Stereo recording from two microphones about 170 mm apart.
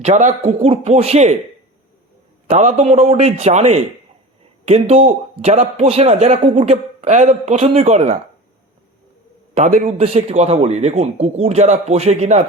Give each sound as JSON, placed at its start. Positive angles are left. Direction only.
{"t": 0.0, "sound": "a man's voice", "side_deg": -45}
{"t": 2.5, "sound": "a man's voice", "side_deg": -40}
{"t": 9.6, "sound": "a man's voice", "side_deg": -40}